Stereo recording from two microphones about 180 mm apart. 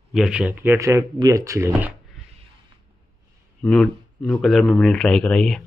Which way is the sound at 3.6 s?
5° left (ahead or behind).